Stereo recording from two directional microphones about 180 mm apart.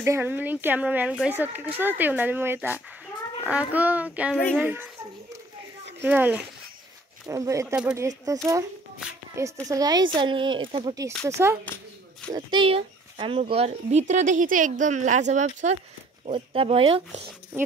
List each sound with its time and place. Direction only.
0.0 s speech: 15° right (ahead or behind)
6.0 s speech: 10° right (ahead or behind)
9.7 s speech: 20° right (ahead or behind)
11.2 s speech: 15° right (ahead or behind)
11.6 s a sound: 10° left (ahead or behind)
12.3 s speech: 25° right (ahead or behind)